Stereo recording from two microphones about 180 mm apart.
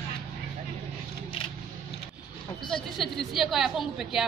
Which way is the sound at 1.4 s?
30° left (ahead or behind).